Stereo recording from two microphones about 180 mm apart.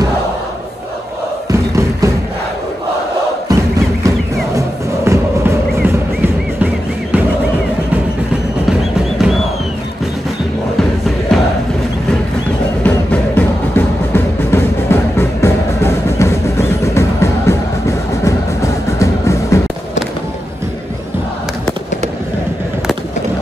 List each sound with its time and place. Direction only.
1.5 s music: 15° right (ahead or behind)
3.4 s music: 20° right (ahead or behind)
10.8 s music: centre (ahead or behind)
12.8 s music: 10° left (ahead or behind)